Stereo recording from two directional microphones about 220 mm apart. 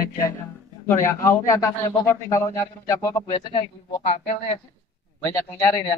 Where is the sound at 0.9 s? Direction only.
10° left (ahead or behind).